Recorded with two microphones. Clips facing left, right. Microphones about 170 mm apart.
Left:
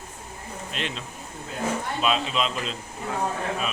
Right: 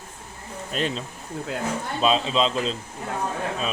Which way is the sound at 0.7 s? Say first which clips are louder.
Right 7 dB; 40° right (ahead or behind).